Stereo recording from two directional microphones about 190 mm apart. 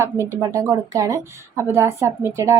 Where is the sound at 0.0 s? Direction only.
15° right (ahead or behind).